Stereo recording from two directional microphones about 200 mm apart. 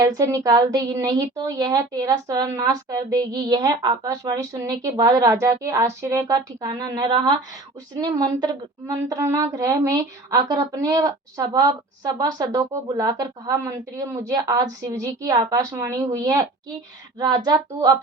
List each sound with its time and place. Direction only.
0.0 s a woman's voice: 20° right (ahead or behind)